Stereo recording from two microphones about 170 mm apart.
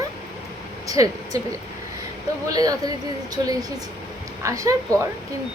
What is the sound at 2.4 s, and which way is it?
A woman's voice, 20° right (ahead or behind).